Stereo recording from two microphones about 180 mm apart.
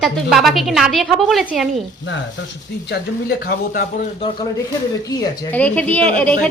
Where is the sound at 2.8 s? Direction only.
65° left (ahead or behind).